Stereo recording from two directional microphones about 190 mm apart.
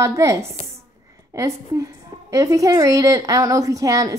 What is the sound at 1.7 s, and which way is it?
A woman's voice, 15° right (ahead or behind).